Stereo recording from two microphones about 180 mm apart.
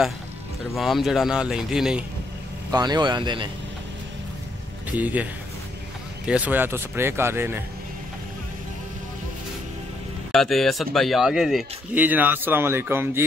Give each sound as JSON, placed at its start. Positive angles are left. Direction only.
{"t": 0.7, "sound": "speech", "side_deg": 0}
{"t": 2.7, "sound": "speech", "side_deg": -20}
{"t": 4.9, "sound": "speech", "side_deg": -10}
{"t": 10.3, "sound": "speech", "side_deg": 0}